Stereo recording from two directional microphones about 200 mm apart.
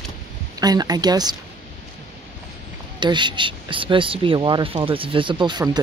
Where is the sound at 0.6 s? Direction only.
20° right (ahead or behind).